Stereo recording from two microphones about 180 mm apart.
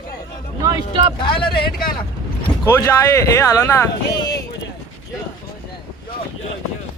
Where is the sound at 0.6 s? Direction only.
25° right (ahead or behind).